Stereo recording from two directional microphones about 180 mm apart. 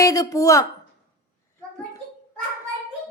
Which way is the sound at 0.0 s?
20° left (ahead or behind).